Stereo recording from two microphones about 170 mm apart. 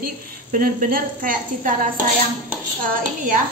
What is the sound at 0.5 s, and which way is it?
A woman's voice, 55° right (ahead or behind).